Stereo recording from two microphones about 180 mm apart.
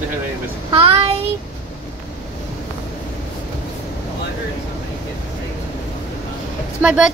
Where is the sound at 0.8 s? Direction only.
30° right (ahead or behind).